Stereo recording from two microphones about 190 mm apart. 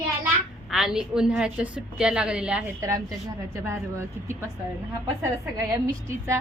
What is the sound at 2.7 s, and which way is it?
A woman's voice, 15° right (ahead or behind).